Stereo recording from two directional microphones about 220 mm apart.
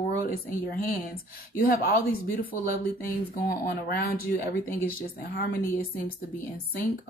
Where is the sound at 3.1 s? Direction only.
45° left (ahead or behind).